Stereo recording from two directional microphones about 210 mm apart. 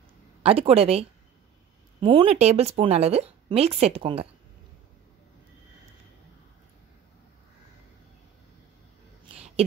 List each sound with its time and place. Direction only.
0.4 s speech: 25° right (ahead or behind)